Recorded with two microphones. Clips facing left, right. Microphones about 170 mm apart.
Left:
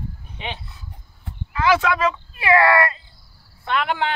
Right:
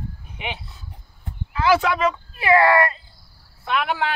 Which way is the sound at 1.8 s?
20° right (ahead or behind).